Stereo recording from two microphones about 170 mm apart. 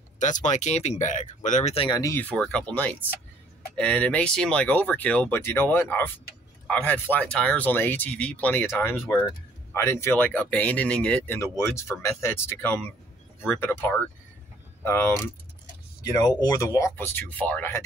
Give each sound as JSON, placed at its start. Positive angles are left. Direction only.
{"t": 0.2, "sound": "speech", "side_deg": 45}
{"t": 1.9, "sound": "speech", "side_deg": 20}